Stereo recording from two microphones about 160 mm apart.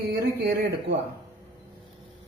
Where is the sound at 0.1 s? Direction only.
90° right.